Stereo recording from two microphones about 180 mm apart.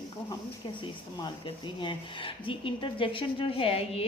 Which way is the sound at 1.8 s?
30° left (ahead or behind).